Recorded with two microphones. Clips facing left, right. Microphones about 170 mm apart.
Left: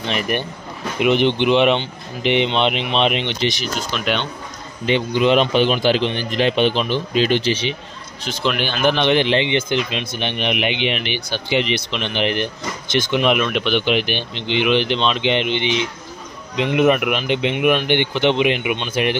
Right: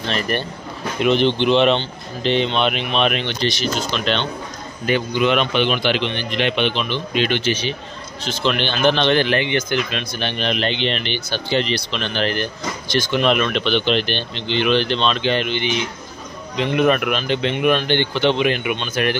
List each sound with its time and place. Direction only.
0.1 s speech: 15° left (ahead or behind)
3.7 s speech: 10° left (ahead or behind)
4.8 s a man's voice: 25° left (ahead or behind)
8.2 s speech: 15° left (ahead or behind)